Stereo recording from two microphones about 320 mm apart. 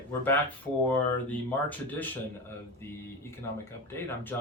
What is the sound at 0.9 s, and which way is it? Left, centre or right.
Speech, centre.